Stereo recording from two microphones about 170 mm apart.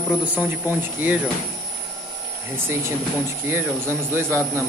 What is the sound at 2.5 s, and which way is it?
Speech, 15° right (ahead or behind).